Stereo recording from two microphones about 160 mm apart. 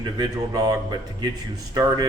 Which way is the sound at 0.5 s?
25° right (ahead or behind).